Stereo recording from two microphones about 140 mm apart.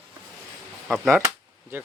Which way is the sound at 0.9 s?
5° right (ahead or behind).